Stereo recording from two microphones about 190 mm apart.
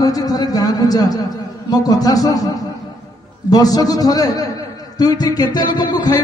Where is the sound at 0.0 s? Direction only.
20° left (ahead or behind).